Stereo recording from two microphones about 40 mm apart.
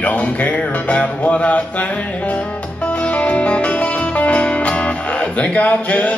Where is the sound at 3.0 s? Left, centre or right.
Left.